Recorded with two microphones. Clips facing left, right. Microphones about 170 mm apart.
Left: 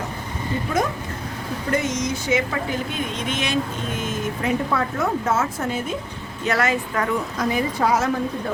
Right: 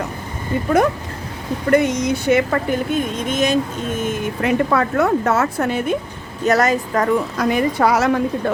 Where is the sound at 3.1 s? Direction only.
45° right (ahead or behind).